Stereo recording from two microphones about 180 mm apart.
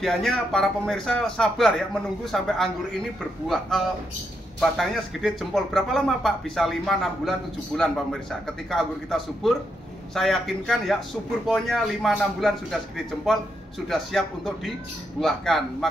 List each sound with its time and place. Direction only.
0.0 s speech: 5° left (ahead or behind)